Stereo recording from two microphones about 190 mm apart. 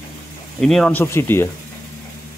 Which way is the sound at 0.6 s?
Centre (ahead or behind).